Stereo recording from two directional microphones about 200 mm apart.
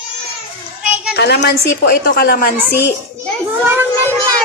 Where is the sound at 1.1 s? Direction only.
55° left (ahead or behind).